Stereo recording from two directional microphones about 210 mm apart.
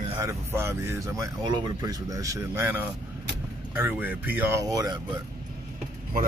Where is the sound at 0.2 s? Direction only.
10° right (ahead or behind).